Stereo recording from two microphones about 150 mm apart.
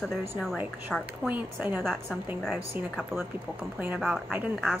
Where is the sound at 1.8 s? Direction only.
Centre (ahead or behind).